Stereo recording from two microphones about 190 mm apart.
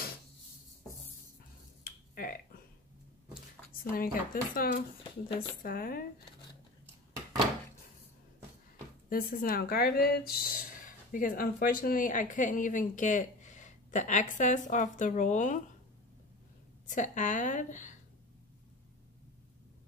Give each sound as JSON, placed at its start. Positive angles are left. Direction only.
{"t": 1.9, "sound": "a sound", "side_deg": 50}
{"t": 3.9, "sound": "speech", "side_deg": 50}
{"t": 5.0, "sound": "speech", "side_deg": 25}
{"t": 5.6, "sound": "speech", "side_deg": 50}
{"t": 9.1, "sound": "a woman's voice", "side_deg": 50}
{"t": 16.8, "sound": "a woman's voice", "side_deg": 40}